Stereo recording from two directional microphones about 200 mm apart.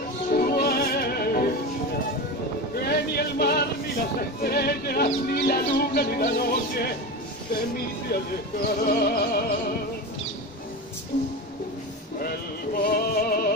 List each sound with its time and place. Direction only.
0.3 s music: 50° left (ahead or behind)
2.7 s a sound: 50° left (ahead or behind)
5.8 s speech: 50° left (ahead or behind)
8.1 s speech: 50° left (ahead or behind)
12.2 s music: 50° left (ahead or behind)